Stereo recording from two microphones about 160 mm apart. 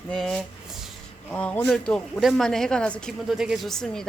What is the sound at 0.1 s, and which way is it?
Speech, centre (ahead or behind).